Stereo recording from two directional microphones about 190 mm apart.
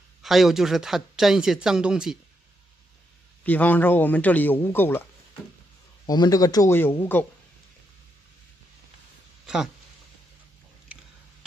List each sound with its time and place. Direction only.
0.2 s speech: centre (ahead or behind)
3.4 s speech: 10° left (ahead or behind)
6.0 s speech: 20° left (ahead or behind)